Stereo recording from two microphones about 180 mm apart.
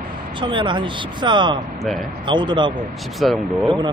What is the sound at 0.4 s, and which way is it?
Speech, 25° right (ahead or behind).